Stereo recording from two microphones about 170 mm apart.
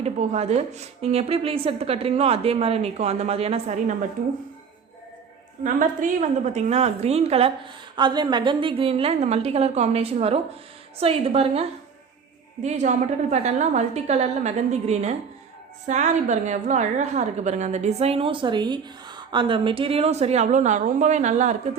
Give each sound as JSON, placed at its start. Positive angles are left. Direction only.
{"t": 0.0, "sound": "a woman's voice", "side_deg": -40}
{"t": 5.6, "sound": "a woman's voice", "side_deg": -50}